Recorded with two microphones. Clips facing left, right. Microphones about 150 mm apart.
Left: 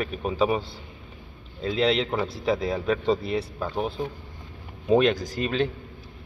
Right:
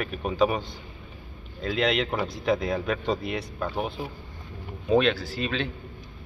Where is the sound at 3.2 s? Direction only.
30° left (ahead or behind).